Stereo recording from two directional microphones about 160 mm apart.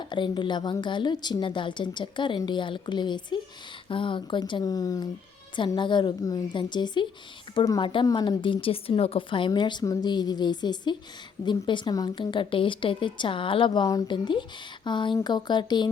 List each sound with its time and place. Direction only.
0.0 s a woman's voice: 30° left (ahead or behind)